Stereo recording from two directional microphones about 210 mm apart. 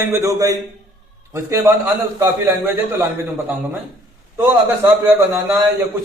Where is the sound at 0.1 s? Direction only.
15° right (ahead or behind).